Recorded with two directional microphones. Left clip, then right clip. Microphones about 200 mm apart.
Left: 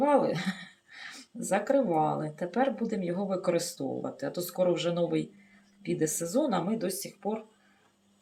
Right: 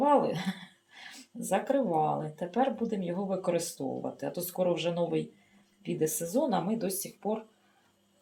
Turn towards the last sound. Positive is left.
turn(degrees=-5)  # may be behind; listen again after turning